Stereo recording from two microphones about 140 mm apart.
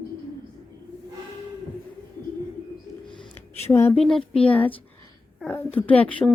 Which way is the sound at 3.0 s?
35° left (ahead or behind).